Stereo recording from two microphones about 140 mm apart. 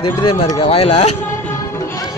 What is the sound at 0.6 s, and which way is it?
Speech, 45° left (ahead or behind).